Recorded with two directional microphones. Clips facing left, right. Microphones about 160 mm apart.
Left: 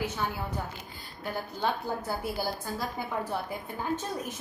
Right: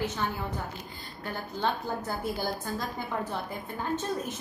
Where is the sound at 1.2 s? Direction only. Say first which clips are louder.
Even; 10° left (ahead or behind).